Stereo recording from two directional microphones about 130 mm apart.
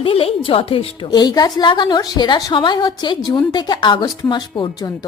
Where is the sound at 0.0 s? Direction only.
45° left (ahead or behind).